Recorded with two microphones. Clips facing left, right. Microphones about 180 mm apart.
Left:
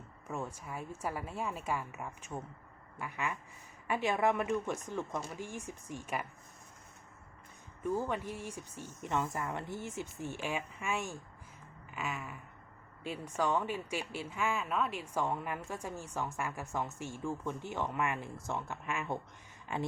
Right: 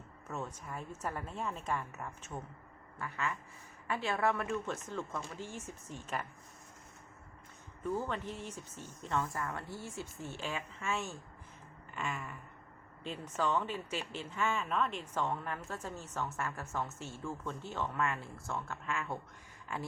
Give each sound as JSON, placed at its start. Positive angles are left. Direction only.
{"t": 0.3, "sound": "speech", "side_deg": 10}
{"t": 7.9, "sound": "speech", "side_deg": 10}
{"t": 11.9, "sound": "a sound", "side_deg": 5}
{"t": 13.1, "sound": "speech", "side_deg": 10}